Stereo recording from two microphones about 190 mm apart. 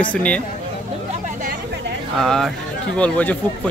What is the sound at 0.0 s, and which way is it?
Speech, 5° left (ahead or behind).